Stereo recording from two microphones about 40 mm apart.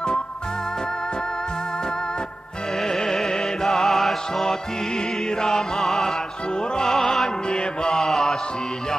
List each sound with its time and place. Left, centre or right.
2.8 s music: centre
6.9 s music: centre
7.2 s mantra: left
8.0 s music: centre